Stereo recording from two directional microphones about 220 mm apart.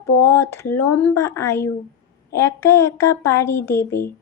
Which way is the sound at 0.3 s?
10° left (ahead or behind).